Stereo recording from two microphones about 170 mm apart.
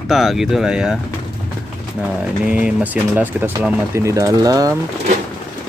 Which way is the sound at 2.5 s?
10° right (ahead or behind).